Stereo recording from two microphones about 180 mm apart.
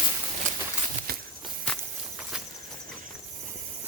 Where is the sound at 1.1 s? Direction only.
60° right (ahead or behind).